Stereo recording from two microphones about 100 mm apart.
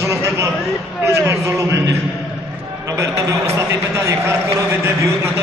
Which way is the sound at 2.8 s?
30° right (ahead or behind).